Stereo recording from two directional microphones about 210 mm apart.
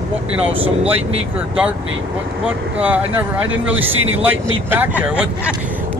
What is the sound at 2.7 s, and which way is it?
Speech, 5° right (ahead or behind).